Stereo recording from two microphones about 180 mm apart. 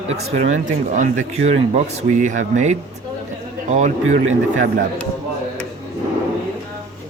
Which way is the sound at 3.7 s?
40° right (ahead or behind).